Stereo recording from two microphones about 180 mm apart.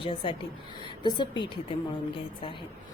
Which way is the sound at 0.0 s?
30° left (ahead or behind).